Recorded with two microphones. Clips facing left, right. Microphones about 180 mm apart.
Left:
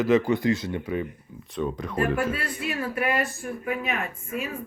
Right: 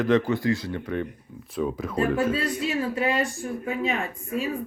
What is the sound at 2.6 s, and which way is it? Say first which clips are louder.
Speech: even; 25° right (ahead or behind).